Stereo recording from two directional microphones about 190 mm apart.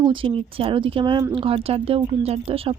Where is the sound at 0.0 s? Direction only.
25° right (ahead or behind).